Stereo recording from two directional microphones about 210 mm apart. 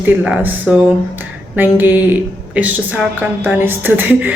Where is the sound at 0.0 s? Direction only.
10° right (ahead or behind).